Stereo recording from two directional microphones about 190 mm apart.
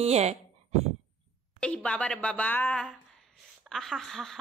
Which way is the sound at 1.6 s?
5° left (ahead or behind).